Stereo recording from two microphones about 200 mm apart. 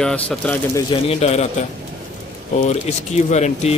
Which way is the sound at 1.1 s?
30° left (ahead or behind).